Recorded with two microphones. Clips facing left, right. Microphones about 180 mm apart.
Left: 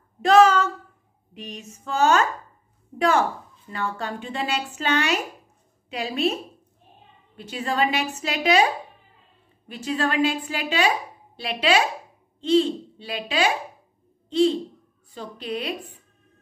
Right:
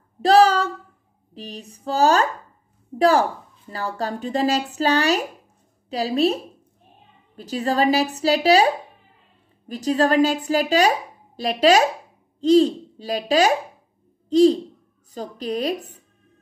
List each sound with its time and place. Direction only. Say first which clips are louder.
0.2 s a sound: right 1 dB; 35° right (ahead or behind)
1.3 s speech: right 2 dB; 35° right (ahead or behind)
7.3 s a woman's voice: right 4 dB; 40° right (ahead or behind)